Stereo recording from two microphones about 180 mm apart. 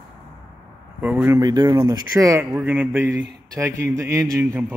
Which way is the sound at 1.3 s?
25° right (ahead or behind).